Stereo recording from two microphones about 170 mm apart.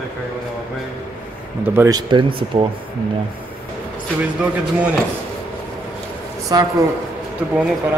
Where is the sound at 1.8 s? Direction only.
25° right (ahead or behind).